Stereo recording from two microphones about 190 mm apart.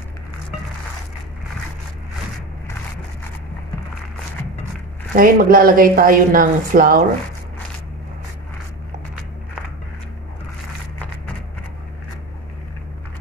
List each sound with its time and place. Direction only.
5.1 s a woman's voice: 50° right (ahead or behind)